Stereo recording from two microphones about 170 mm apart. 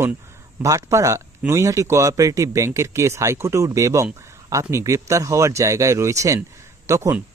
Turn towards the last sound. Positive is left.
turn(degrees=-15)  # may be behind; listen again after turning